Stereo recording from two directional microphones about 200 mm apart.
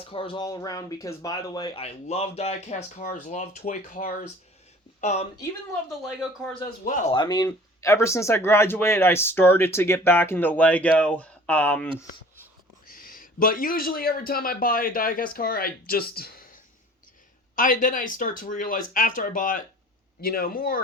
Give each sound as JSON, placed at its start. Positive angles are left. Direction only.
{"t": 0.0, "sound": "speech", "side_deg": 25}
{"t": 6.1, "sound": "speech", "side_deg": -5}
{"t": 6.8, "sound": "speech", "side_deg": 40}
{"t": 7.1, "sound": "speech", "side_deg": 20}
{"t": 12.9, "sound": "speech", "side_deg": 45}